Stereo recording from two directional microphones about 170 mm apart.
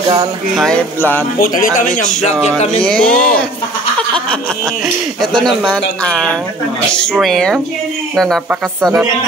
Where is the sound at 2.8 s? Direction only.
5° left (ahead or behind).